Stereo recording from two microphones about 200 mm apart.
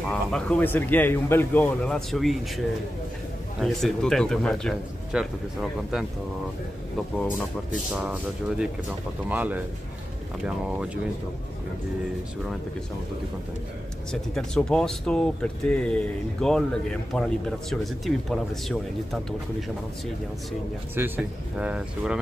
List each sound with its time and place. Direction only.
0.1 s speech: 5° left (ahead or behind)
3.6 s speech: centre (ahead or behind)
7.7 s a man's voice: 5° right (ahead or behind)
14.3 s speech: 5° left (ahead or behind)
21.0 s a man's voice: 10° right (ahead or behind)